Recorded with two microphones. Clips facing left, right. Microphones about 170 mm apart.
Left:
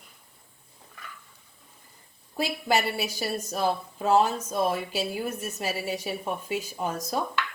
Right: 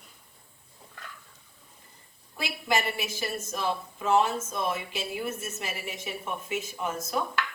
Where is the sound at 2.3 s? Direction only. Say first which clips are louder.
Left 3 dB; 40° left (ahead or behind).